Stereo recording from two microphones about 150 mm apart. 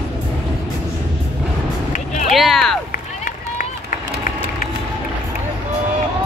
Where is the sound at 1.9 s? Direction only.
55° left (ahead or behind).